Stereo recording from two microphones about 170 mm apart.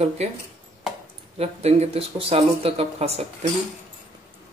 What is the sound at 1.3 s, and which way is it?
Speech, 35° right (ahead or behind).